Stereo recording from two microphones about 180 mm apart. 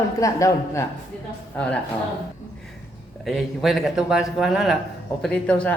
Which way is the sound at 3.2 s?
Centre (ahead or behind).